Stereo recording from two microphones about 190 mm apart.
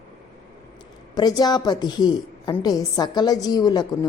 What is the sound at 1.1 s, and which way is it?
A woman's voice, 20° left (ahead or behind).